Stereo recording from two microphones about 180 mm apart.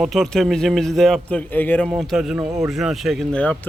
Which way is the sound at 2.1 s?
5° right (ahead or behind).